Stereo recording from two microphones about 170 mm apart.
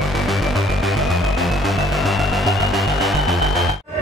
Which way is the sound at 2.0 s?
Centre (ahead or behind).